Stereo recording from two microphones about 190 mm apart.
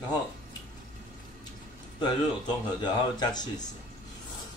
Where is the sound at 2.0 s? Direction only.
25° left (ahead or behind).